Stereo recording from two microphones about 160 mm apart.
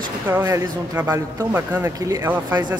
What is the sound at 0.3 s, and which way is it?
A man's voice, 15° right (ahead or behind).